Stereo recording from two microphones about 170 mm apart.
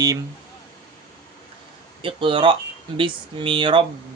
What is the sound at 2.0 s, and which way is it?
Speech, 30° right (ahead or behind).